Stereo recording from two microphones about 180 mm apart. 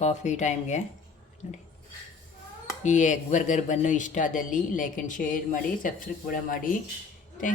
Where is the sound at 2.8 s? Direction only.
40° left (ahead or behind).